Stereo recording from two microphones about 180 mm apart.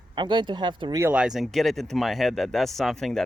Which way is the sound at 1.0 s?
10° right (ahead or behind).